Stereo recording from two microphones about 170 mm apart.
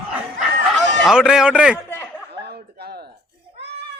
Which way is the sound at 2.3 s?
75° right (ahead or behind).